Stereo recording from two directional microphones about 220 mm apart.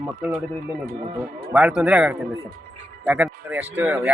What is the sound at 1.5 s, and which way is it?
Speech, 5° right (ahead or behind).